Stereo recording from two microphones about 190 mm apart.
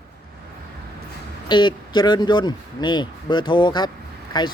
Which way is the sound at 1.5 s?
25° left (ahead or behind).